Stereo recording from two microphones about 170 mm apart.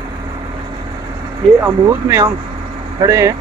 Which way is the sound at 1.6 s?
15° right (ahead or behind).